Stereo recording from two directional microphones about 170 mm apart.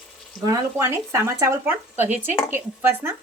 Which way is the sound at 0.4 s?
20° right (ahead or behind).